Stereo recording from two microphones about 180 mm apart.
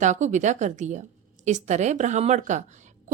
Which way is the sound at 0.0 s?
40° right (ahead or behind).